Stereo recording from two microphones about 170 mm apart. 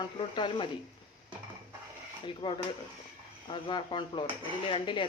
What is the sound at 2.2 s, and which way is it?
Speech, 30° left (ahead or behind).